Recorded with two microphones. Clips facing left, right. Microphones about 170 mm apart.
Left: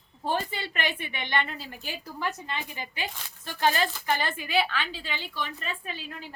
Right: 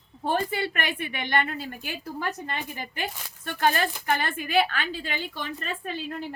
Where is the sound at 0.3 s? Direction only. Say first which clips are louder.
Right 4 dB; 55° right (ahead or behind).